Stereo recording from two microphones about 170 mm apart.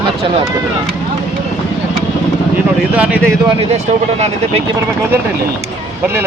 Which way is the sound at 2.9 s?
10° right (ahead or behind).